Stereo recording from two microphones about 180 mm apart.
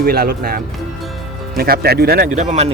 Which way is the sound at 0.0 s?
60° right (ahead or behind).